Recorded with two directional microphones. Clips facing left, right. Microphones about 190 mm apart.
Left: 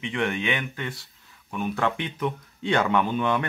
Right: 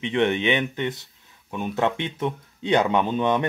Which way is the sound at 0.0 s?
25° right (ahead or behind).